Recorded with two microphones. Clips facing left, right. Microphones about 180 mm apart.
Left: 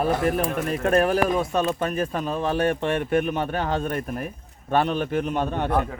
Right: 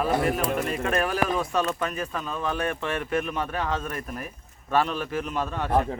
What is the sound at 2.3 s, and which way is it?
Speech, 30° left (ahead or behind).